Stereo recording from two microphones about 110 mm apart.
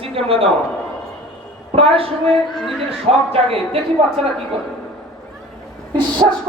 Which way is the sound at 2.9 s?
60° right (ahead or behind).